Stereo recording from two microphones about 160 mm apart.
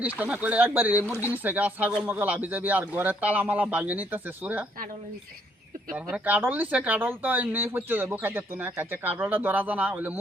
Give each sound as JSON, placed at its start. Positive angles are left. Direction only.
{"t": 0.0, "sound": "a man's voice", "side_deg": -10}
{"t": 6.2, "sound": "a man's voice", "side_deg": -10}